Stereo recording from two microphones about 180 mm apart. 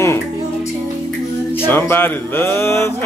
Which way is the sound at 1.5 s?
10° left (ahead or behind).